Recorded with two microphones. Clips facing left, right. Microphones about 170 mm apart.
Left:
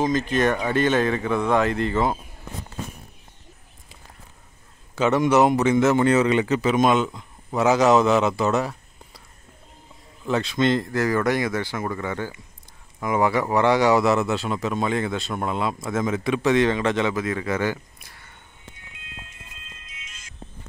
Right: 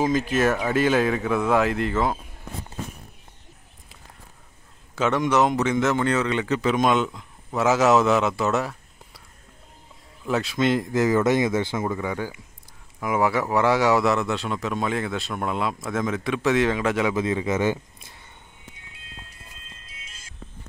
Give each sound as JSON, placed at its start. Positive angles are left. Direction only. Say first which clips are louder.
{"t": 0.0, "sound": "speech", "louder": "even", "side_deg": -5}
{"t": 4.9, "sound": "speech", "louder": "left 3 dB", "side_deg": 0}
{"t": 10.2, "sound": "speech", "louder": "left 1 dB", "side_deg": -5}
{"t": 17.1, "sound": "speech", "louder": "right 2 dB", "side_deg": -25}
{"t": 18.9, "sound": "music", "louder": "left 2 dB", "side_deg": -35}